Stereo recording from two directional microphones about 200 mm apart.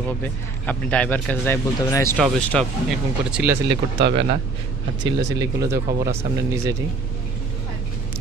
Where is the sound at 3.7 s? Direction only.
60° right (ahead or behind).